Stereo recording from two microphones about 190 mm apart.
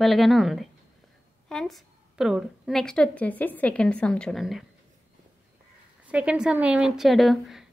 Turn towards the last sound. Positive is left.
turn(degrees=0)  # may be behind; listen again after turning